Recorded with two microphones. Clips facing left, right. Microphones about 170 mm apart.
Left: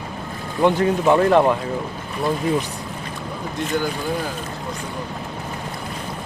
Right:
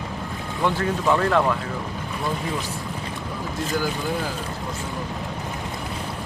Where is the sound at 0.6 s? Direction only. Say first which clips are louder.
Left 6 dB; 20° left (ahead or behind).